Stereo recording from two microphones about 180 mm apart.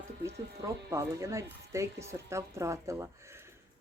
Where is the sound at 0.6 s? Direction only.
20° right (ahead or behind).